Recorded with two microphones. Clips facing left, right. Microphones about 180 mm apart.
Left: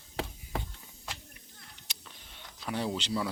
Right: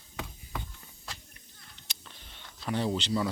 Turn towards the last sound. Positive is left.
turn(degrees=5)  # may be behind; listen again after turning